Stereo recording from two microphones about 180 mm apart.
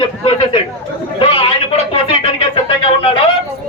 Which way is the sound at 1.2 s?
30° left (ahead or behind).